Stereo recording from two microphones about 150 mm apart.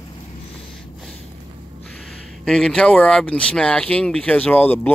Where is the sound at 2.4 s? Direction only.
5° left (ahead or behind).